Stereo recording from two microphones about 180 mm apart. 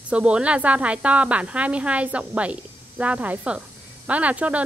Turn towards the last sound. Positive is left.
turn(degrees=-10)  # may be behind; listen again after turning